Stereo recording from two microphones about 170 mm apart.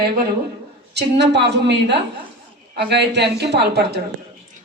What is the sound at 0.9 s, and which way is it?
A woman's voice, 85° right.